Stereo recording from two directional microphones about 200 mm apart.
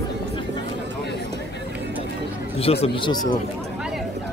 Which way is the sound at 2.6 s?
30° left (ahead or behind).